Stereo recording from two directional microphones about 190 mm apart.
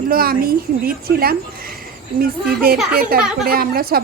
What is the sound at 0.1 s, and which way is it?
A woman's voice, 50° right (ahead or behind).